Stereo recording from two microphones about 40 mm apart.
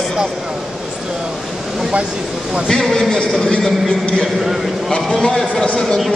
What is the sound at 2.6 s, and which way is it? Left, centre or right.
Speech, centre.